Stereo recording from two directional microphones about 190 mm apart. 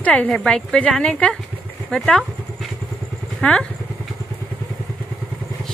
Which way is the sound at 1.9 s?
5° left (ahead or behind).